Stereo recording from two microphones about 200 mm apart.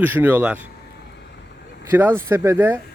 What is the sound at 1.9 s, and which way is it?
Speech, 10° right (ahead or behind).